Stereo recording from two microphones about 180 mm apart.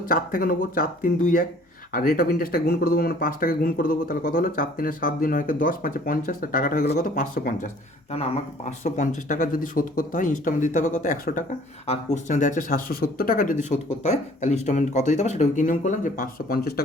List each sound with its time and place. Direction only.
0.0 s speech: 50° left (ahead or behind)
8.1 s speech: 35° left (ahead or behind); by 16.8 s 55° left (ahead or behind)